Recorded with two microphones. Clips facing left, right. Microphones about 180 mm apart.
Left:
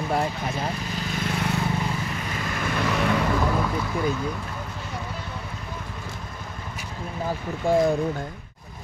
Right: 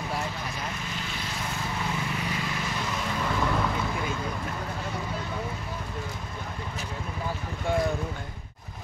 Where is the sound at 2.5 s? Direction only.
60° left (ahead or behind).